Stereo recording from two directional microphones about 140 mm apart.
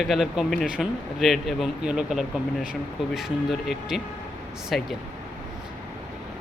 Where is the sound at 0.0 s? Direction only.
Centre (ahead or behind).